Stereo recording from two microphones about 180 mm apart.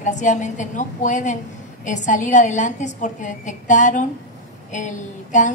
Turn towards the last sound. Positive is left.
turn(degrees=45)  # may be behind; listen again after turning